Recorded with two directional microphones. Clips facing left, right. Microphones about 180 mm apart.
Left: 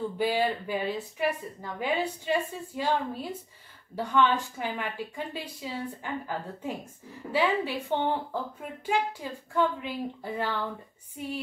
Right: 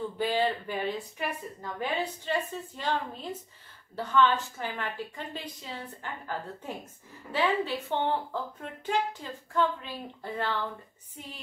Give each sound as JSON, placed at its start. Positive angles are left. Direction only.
{"t": 0.2, "sound": "speech", "side_deg": 10}